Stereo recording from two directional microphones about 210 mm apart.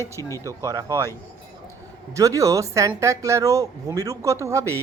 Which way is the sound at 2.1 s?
15° right (ahead or behind).